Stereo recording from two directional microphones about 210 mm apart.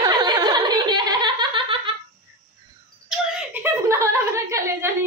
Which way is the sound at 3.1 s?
5° right (ahead or behind).